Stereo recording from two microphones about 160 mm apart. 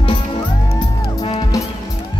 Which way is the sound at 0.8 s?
25° left (ahead or behind).